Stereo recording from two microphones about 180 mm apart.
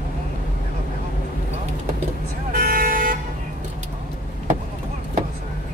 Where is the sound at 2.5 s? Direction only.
50° right (ahead or behind).